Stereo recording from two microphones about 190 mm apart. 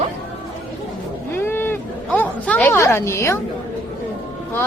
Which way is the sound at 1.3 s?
10° left (ahead or behind).